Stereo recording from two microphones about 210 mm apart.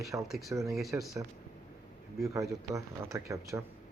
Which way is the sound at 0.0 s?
15° right (ahead or behind).